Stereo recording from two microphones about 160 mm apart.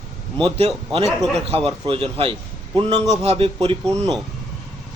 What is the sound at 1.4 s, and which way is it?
A man's voice, 35° right (ahead or behind).